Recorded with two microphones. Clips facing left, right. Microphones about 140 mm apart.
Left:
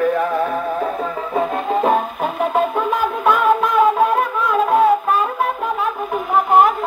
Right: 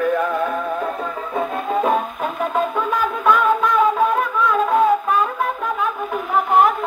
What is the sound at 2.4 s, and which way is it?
Wind instrument, 10° left (ahead or behind).